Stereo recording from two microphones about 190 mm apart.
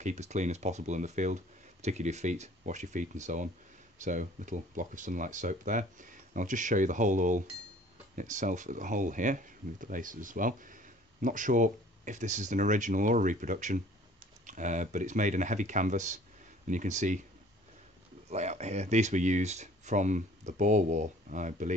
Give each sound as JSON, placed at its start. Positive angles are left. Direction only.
{"t": 0.0, "sound": "speech", "side_deg": -35}
{"t": 18.3, "sound": "speech", "side_deg": -35}